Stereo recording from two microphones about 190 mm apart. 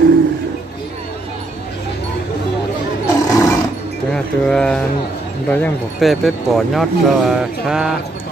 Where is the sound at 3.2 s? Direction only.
15° left (ahead or behind).